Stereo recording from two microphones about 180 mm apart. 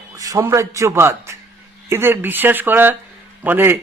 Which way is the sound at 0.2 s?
20° right (ahead or behind).